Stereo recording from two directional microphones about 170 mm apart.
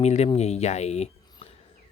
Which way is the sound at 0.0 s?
40° left (ahead or behind).